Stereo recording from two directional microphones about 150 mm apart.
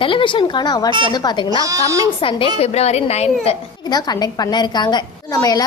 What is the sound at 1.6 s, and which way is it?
Speech, 20° right (ahead or behind).